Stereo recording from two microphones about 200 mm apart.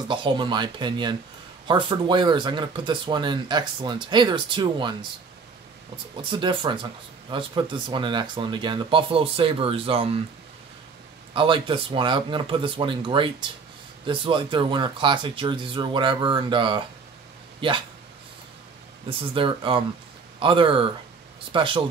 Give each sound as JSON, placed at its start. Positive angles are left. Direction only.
{"t": 0.1, "sound": "speech", "side_deg": -25}
{"t": 6.3, "sound": "speech", "side_deg": -25}
{"t": 11.3, "sound": "speech", "side_deg": -25}
{"t": 19.0, "sound": "speech", "side_deg": -25}